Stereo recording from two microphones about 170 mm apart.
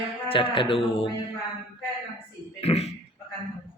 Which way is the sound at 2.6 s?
35° left (ahead or behind).